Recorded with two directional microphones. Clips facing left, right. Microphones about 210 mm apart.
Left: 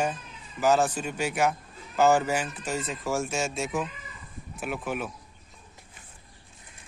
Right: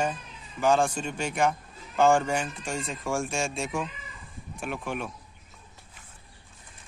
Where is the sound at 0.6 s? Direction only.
5° left (ahead or behind).